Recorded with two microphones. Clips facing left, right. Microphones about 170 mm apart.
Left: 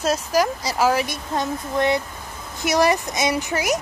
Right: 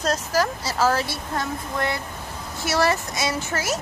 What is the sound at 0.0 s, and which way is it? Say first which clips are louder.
Speech: left 3 dB; 10° left (ahead or behind).